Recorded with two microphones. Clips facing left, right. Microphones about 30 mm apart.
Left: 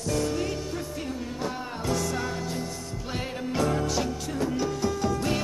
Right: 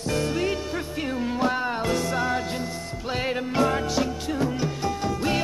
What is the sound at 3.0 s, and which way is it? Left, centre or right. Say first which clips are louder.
Music: right 6 dB; right.